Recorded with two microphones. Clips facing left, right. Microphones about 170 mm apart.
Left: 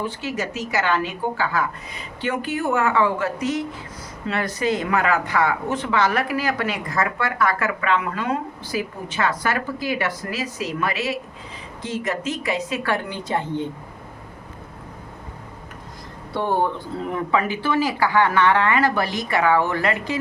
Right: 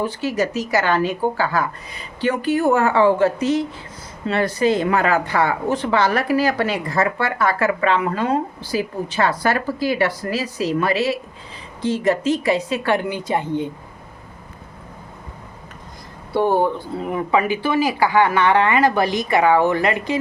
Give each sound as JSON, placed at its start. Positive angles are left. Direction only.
{"t": 0.0, "sound": "a woman's voice", "side_deg": -40}
{"t": 16.3, "sound": "speech", "side_deg": -10}